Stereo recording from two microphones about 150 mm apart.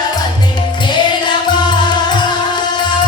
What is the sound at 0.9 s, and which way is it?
Music, 30° left (ahead or behind).